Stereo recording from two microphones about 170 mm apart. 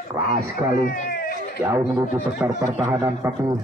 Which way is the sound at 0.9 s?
55° left (ahead or behind).